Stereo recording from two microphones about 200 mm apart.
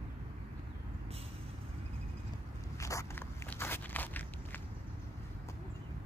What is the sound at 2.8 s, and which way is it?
Walk, 15° left (ahead or behind).